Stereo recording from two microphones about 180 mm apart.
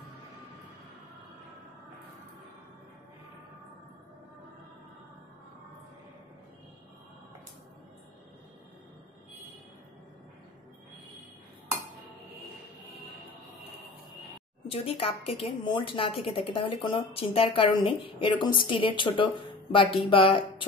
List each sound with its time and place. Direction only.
14.7 s a woman's voice: 30° left (ahead or behind)